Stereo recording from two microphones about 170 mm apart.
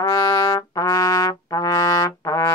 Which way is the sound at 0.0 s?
25° left (ahead or behind).